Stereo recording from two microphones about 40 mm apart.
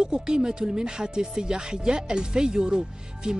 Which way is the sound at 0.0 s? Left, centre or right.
Right.